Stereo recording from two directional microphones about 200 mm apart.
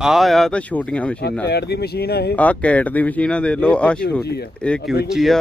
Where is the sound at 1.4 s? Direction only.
55° left (ahead or behind).